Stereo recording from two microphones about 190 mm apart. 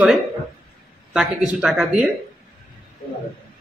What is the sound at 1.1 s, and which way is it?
Speech, centre (ahead or behind).